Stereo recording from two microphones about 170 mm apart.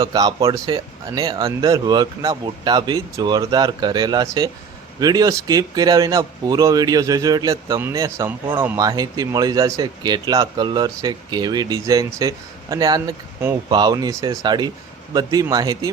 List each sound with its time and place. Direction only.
0.0 s speech: 25° right (ahead or behind)